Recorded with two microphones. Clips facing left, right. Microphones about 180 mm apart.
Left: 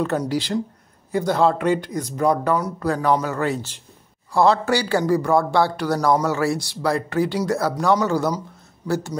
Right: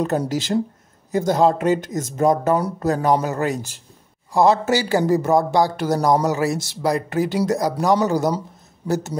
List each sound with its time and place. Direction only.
0.0 s speech: 40° right (ahead or behind)
1.4 s speech: 20° right (ahead or behind)
1.7 s speech: 45° right (ahead or behind)
2.1 s speech: 20° right (ahead or behind)